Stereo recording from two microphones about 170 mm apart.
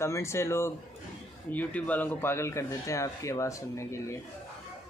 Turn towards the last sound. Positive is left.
turn(degrees=15)  # may be behind; listen again after turning